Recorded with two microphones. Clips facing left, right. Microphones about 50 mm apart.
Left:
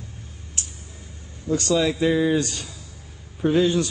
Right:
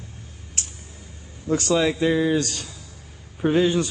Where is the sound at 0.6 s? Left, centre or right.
Right.